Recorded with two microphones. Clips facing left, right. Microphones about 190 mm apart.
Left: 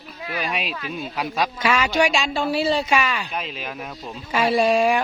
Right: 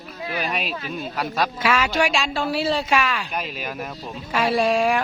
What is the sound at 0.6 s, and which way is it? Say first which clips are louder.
Speech: right 1 dB; 40° right (ahead or behind).